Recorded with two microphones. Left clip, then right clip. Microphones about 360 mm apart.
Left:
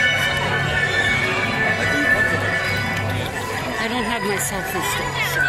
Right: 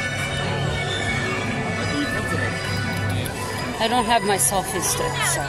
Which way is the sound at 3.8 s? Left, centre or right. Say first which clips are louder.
Right 6 dB; centre.